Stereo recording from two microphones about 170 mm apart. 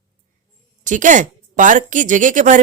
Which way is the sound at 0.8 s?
50° right (ahead or behind).